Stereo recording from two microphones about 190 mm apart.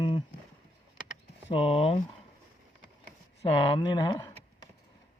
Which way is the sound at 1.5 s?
30° left (ahead or behind).